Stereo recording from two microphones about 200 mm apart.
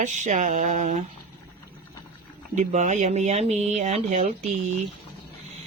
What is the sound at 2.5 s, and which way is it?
Speech, 35° right (ahead or behind).